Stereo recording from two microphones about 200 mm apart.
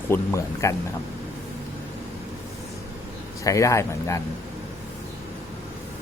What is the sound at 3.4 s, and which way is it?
Speech, 15° left (ahead or behind).